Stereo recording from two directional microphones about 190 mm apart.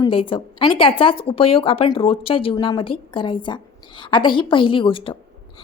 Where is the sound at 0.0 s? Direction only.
25° left (ahead or behind).